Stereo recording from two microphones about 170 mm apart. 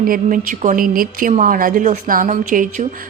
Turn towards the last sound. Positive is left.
turn(degrees=-50)  # may be behind; listen again after turning